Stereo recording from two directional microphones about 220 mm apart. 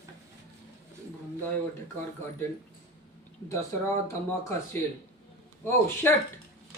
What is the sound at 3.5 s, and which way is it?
Speech, 10° left (ahead or behind).